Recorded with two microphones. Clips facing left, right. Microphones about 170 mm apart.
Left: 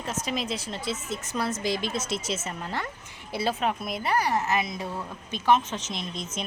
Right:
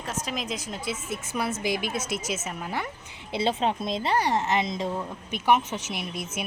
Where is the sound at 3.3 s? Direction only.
25° right (ahead or behind).